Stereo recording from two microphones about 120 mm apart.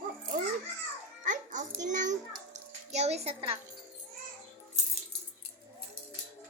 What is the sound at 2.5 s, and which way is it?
A child's voice, 65° right (ahead or behind).